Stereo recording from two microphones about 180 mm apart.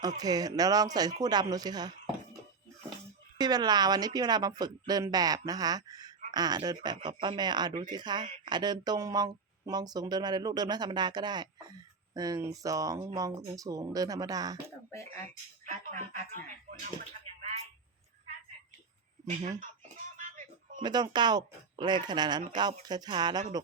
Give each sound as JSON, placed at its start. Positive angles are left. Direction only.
{"t": 0.2, "sound": "speech", "side_deg": -20}
{"t": 14.8, "sound": "a sound", "side_deg": 15}
{"t": 15.6, "sound": "a sound", "side_deg": -45}
{"t": 19.3, "sound": "speech", "side_deg": -40}
{"t": 20.1, "sound": "music", "side_deg": -45}
{"t": 20.8, "sound": "speech", "side_deg": -25}